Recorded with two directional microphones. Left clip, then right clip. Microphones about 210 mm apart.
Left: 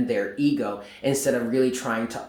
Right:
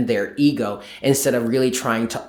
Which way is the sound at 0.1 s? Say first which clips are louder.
Right 6 dB; 45° right (ahead or behind).